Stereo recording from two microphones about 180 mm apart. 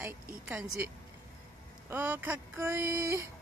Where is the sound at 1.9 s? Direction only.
10° right (ahead or behind).